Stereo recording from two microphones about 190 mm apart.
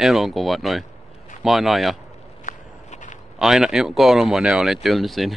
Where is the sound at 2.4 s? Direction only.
40° left (ahead or behind).